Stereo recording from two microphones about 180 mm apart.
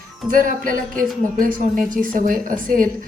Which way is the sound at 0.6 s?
50° right (ahead or behind).